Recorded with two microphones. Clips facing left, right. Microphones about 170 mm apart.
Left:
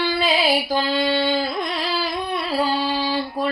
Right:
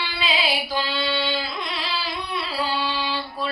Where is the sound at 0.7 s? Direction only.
45° left (ahead or behind).